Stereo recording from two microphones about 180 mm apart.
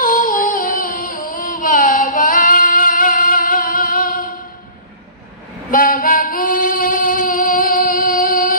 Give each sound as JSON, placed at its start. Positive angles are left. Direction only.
{"t": 0.0, "sound": "music", "side_deg": 50}
{"t": 5.7, "sound": "female singing", "side_deg": 50}